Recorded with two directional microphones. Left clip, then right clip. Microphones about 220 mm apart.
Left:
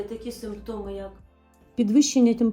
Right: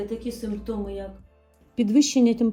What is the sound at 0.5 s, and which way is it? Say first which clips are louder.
Speech: right 2 dB; centre (ahead or behind).